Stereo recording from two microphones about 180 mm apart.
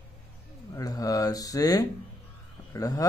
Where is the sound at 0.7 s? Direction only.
20° left (ahead or behind).